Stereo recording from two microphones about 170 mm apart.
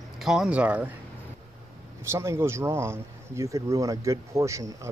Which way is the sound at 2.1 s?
15° right (ahead or behind).